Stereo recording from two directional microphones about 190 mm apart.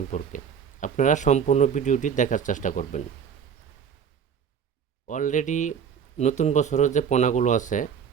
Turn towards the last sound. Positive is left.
turn(degrees=40)  # may be behind; listen again after turning